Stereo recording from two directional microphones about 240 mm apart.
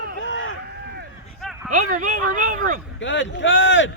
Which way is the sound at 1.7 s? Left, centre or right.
Right.